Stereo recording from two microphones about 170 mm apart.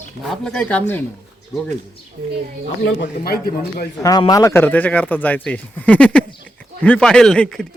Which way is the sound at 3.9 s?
20° left (ahead or behind).